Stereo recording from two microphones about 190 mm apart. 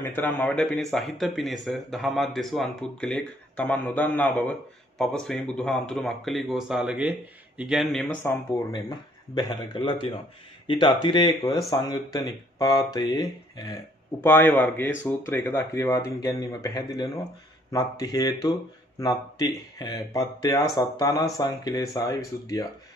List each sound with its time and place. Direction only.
0.0 s speech: 10° left (ahead or behind)
8.7 s speech: 20° left (ahead or behind)
14.2 s speech: 10° left (ahead or behind)